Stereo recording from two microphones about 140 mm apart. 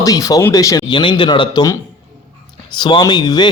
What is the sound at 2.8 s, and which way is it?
Speech, 35° left (ahead or behind).